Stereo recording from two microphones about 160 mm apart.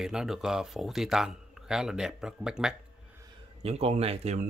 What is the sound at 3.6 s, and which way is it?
Speech, 40° right (ahead or behind).